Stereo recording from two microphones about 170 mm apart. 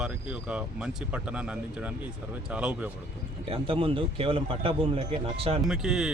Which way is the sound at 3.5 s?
30° right (ahead or behind).